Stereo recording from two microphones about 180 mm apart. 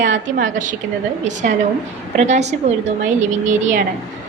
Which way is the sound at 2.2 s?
40° right (ahead or behind).